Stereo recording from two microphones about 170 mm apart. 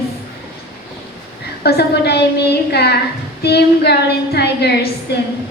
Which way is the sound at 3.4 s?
75° left (ahead or behind).